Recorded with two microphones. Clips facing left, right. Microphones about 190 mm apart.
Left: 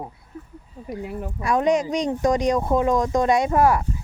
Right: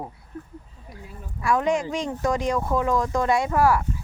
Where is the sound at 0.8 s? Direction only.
65° left (ahead or behind).